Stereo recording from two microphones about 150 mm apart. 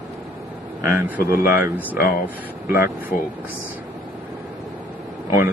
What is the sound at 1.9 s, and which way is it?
Speech, 75° left (ahead or behind).